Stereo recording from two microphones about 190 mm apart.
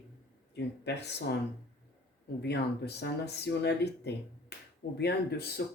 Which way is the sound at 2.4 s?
60° left (ahead or behind).